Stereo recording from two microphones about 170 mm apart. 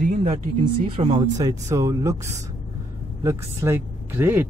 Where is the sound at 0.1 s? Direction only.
40° right (ahead or behind).